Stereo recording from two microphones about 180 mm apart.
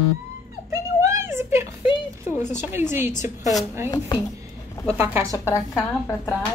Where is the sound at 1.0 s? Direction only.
15° right (ahead or behind).